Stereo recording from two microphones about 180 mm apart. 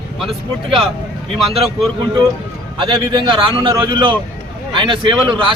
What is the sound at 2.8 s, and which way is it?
A man's voice, 25° right (ahead or behind).